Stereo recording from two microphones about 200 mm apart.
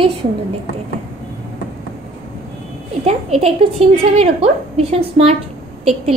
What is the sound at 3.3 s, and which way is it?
A woman's voice, 30° right (ahead or behind).